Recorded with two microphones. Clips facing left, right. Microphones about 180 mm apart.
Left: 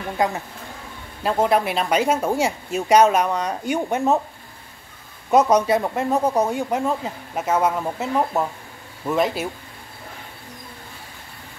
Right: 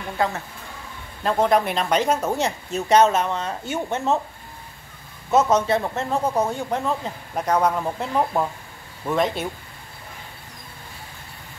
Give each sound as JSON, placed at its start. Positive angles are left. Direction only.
{"t": 0.2, "sound": "speech", "side_deg": 15}
{"t": 1.2, "sound": "speech", "side_deg": 5}
{"t": 5.3, "sound": "speech", "side_deg": 10}